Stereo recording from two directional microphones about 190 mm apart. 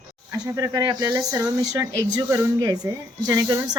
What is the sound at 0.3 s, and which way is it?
Speech, 15° right (ahead or behind).